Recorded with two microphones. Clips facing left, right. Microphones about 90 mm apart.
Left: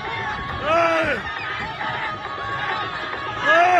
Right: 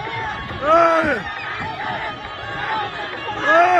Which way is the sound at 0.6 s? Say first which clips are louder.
Right 5 dB; 25° right (ahead or behind).